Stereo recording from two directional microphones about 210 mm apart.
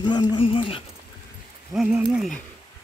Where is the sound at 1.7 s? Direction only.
Centre (ahead or behind).